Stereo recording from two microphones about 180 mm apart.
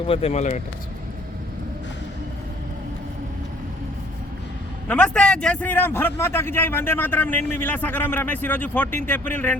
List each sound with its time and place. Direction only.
0.1 s speech: 35° left (ahead or behind)
4.9 s a man's voice: 5° left (ahead or behind)